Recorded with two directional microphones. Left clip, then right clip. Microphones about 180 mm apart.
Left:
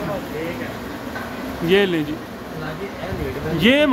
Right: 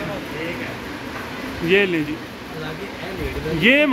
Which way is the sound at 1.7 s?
5° left (ahead or behind).